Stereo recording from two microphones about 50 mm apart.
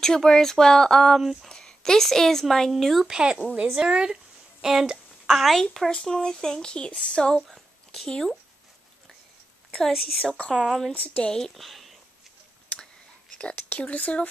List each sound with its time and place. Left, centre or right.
0.0 s speech: centre
1.2 s speech: centre
1.5 s speech: centre
3.1 s speech: centre
5.6 s speech: centre
5.9 s speech: centre
7.4 s a sound: centre
9.7 s speech: centre
10.5 s speech: centre
11.2 s speech: centre
11.5 s speech: centre
13.6 s speech: left